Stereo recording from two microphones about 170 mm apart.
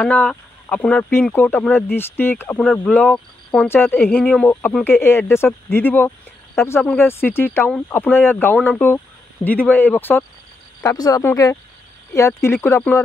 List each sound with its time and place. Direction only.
0.0 s speech: 5° left (ahead or behind)